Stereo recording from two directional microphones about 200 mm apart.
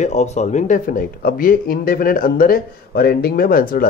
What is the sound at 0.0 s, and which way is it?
Speech, 35° left (ahead or behind).